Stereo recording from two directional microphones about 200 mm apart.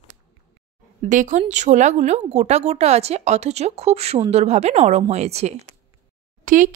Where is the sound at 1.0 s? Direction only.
40° right (ahead or behind).